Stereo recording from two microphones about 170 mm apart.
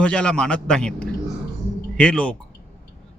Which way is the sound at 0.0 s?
5° left (ahead or behind).